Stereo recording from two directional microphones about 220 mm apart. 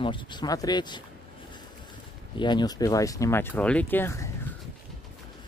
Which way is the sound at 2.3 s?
20° left (ahead or behind).